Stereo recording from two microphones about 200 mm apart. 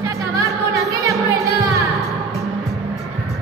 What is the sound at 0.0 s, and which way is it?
Music, 15° right (ahead or behind).